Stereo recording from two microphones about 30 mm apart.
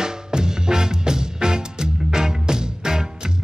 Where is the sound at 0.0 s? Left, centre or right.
Right.